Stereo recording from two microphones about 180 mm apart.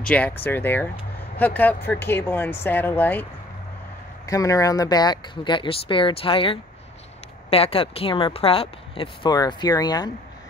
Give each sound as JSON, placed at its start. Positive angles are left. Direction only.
{"t": 0.0, "sound": "speech", "side_deg": 5}
{"t": 4.3, "sound": "a woman's voice", "side_deg": 20}